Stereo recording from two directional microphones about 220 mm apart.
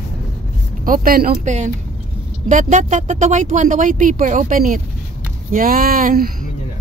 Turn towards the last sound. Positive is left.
turn(degrees=-40)  # may be behind; listen again after turning